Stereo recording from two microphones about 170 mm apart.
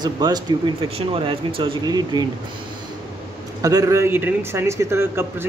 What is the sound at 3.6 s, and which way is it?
A man's voice, 20° right (ahead or behind).